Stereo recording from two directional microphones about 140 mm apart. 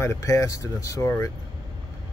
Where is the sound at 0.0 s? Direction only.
20° left (ahead or behind).